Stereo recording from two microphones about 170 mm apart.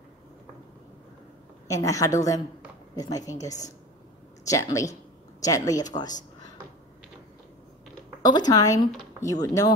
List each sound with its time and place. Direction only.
1.7 s speech: 20° left (ahead or behind)
8.2 s speech: 25° left (ahead or behind)